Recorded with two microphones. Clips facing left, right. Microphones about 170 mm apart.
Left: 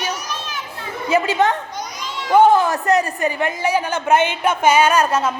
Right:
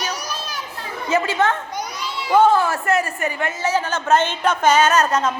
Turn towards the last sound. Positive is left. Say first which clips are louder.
# left 1 dB
turn(degrees=10)  # may be behind; listen again after turning